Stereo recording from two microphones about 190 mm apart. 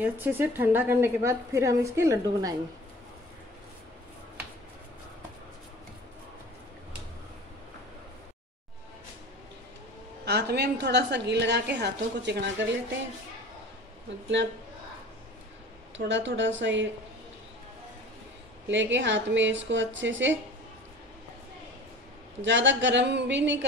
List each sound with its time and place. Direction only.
0.0 s a woman's voice: 10° right (ahead or behind)
10.2 s a woman's voice: 60° right (ahead or behind)
16.1 s speech: 70° right (ahead or behind)
18.7 s speech: 70° right (ahead or behind)
22.4 s speech: 70° right (ahead or behind)